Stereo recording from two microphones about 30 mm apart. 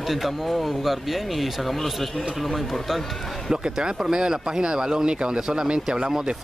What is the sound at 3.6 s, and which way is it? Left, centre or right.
Speech, right.